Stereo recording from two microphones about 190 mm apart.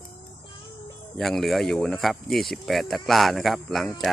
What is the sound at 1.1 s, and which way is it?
Speech, centre (ahead or behind).